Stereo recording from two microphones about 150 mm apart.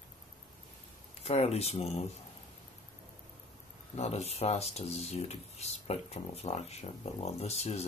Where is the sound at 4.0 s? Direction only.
45° left (ahead or behind).